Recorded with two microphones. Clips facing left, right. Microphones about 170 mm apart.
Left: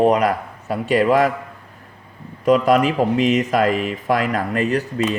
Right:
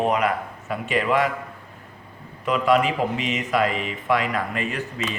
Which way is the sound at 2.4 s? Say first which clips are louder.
Left 5 dB; 40° left (ahead or behind).